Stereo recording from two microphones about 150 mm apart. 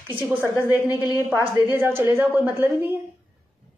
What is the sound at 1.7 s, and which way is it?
A woman's voice, 15° right (ahead or behind).